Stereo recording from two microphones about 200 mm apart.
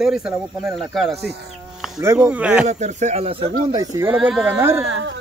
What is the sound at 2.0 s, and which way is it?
Speech, 5° right (ahead or behind).